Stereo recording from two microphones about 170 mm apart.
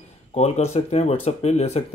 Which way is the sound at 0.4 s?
40° left (ahead or behind).